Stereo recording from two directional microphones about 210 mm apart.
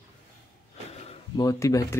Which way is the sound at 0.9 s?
30° left (ahead or behind).